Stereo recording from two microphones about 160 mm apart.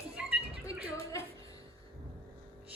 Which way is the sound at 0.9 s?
20° left (ahead or behind).